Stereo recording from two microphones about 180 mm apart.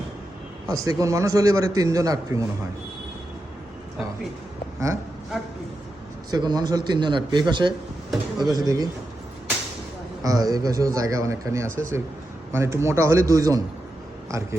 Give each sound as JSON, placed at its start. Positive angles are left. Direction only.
{"t": 0.7, "sound": "a man's voice", "side_deg": -20}
{"t": 6.3, "sound": "a man's voice", "side_deg": -20}
{"t": 8.1, "sound": "a sound", "side_deg": 0}
{"t": 8.5, "sound": "a man's voice", "side_deg": -20}
{"t": 10.2, "sound": "a man's voice", "side_deg": -20}